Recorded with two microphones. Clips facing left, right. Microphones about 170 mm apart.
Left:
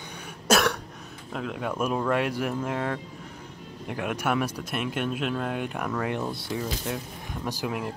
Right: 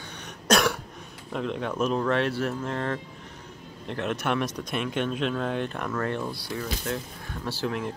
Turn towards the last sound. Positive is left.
turn(degrees=10)  # may be behind; listen again after turning